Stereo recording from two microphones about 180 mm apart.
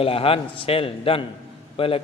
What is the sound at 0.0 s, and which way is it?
A man's voice, 30° left (ahead or behind).